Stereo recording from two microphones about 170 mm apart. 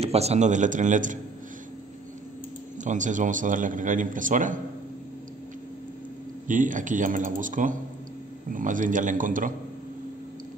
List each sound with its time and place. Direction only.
0.0 s a man's voice: 40° right (ahead or behind)
2.8 s a man's voice: 45° right (ahead or behind)
6.4 s a man's voice: 50° right (ahead or behind)